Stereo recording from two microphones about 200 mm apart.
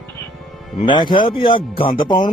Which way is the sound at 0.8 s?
25° left (ahead or behind).